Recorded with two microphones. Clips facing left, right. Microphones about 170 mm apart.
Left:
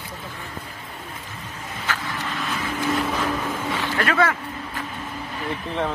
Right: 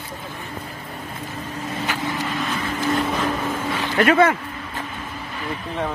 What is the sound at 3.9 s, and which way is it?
Speech, 20° right (ahead or behind).